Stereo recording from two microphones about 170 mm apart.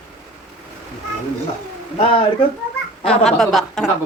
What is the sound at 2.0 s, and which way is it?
Speech, 30° left (ahead or behind).